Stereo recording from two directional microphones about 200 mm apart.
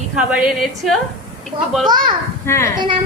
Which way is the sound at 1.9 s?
20° right (ahead or behind).